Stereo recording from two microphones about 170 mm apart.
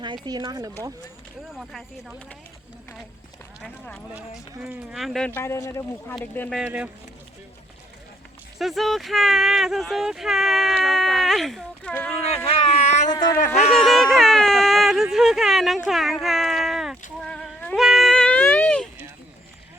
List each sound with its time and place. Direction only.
0.0 s speech: 25° right (ahead or behind)
1.5 s speech: centre (ahead or behind)
3.6 s speech: 5° left (ahead or behind)
4.6 s speech: 5° right (ahead or behind); by 6.1 s 20° left (ahead or behind)
6.1 s speech: 5° left (ahead or behind)
6.6 s speech: 10° right (ahead or behind)
8.5 s speech: centre (ahead or behind)
12.5 s a sound: 40° left (ahead or behind)
13.4 s speech: 40° left (ahead or behind)
13.7 s a sound: centre (ahead or behind)
17.2 s music: 5° left (ahead or behind)
17.7 s a sound: centre (ahead or behind)